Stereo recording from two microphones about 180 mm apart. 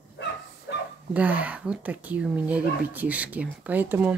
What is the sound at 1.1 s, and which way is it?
Speech, 10° right (ahead or behind).